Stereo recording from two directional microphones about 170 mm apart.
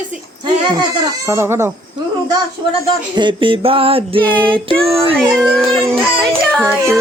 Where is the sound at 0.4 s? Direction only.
25° right (ahead or behind).